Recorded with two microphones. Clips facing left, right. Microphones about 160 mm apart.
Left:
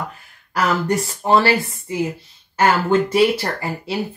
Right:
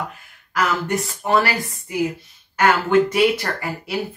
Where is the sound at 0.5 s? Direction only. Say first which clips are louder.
Left 2 dB; 35° left (ahead or behind).